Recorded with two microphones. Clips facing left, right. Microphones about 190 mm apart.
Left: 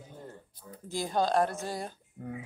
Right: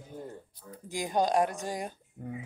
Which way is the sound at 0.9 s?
15° right (ahead or behind).